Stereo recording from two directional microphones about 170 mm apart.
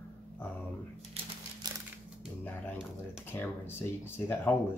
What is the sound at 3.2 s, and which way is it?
Speech, 15° left (ahead or behind).